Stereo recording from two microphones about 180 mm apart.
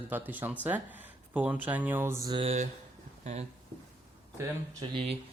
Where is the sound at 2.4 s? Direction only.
35° right (ahead or behind).